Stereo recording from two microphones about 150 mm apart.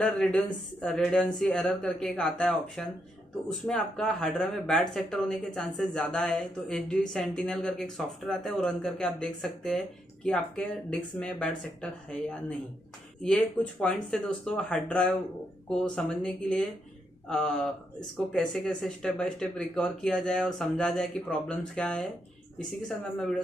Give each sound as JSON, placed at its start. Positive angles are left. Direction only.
{"t": 0.0, "sound": "speech", "side_deg": 5}